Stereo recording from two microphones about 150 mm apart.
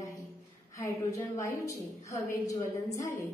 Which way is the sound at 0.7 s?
20° left (ahead or behind).